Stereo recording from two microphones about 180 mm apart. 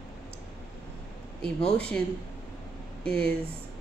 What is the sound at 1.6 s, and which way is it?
Speech, 5° left (ahead or behind).